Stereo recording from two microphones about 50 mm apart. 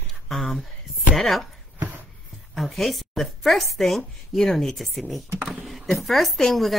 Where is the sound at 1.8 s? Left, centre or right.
Right.